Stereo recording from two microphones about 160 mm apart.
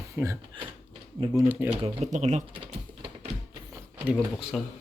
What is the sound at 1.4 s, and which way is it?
Speech, 10° right (ahead or behind).